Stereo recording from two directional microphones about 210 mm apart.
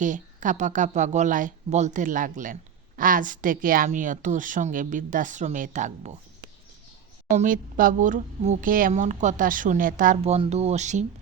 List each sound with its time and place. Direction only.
0.0 s speech: 35° right (ahead or behind)
7.3 s speech: 40° right (ahead or behind)